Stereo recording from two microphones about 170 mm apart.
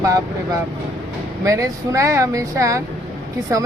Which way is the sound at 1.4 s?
20° right (ahead or behind).